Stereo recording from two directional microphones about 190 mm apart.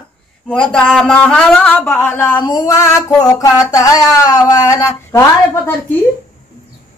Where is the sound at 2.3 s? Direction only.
20° left (ahead or behind).